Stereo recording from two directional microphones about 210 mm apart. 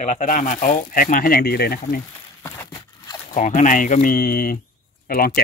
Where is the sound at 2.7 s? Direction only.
20° left (ahead or behind).